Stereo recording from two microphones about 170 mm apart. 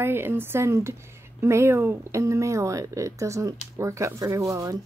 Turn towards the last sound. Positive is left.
turn(degrees=-20)  # may be behind; listen again after turning